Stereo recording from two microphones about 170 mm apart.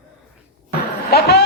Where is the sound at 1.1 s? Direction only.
70° left (ahead or behind).